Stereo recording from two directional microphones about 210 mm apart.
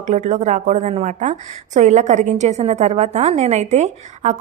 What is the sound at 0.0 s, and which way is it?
A woman's voice, 35° right (ahead or behind).